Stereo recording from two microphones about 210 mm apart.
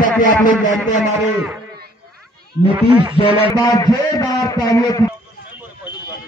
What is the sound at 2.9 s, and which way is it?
Speech, 25° right (ahead or behind).